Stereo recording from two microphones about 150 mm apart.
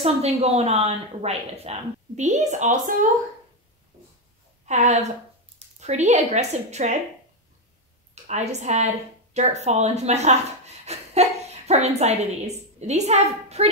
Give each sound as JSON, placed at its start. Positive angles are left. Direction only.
{"t": 0.0, "sound": "a woman's voice", "side_deg": -45}
{"t": 4.6, "sound": "a woman's voice", "side_deg": -50}
{"t": 8.1, "sound": "a woman's voice", "side_deg": -50}